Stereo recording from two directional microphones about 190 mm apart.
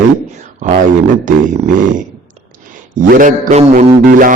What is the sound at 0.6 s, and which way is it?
Speech, 40° right (ahead or behind).